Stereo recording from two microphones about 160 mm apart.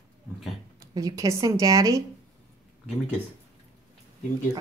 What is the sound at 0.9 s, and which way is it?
A woman's voice, 20° right (ahead or behind).